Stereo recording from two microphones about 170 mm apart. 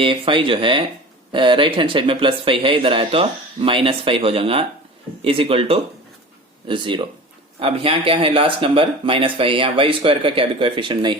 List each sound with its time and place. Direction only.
0.0 s speech: 30° right (ahead or behind)